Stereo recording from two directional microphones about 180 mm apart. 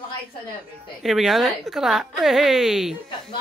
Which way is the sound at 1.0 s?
Centre (ahead or behind).